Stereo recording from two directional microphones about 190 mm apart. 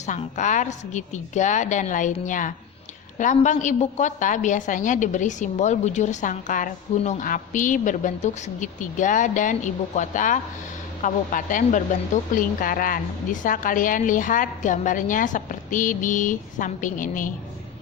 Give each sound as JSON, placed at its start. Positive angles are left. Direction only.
{"t": 0.0, "sound": "a woman's voice", "side_deg": 40}